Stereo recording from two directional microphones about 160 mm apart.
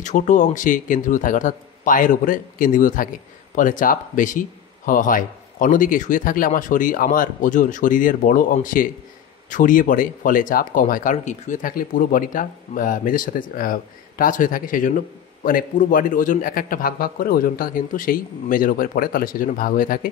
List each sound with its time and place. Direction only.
0.0 s speech: 50° left (ahead or behind)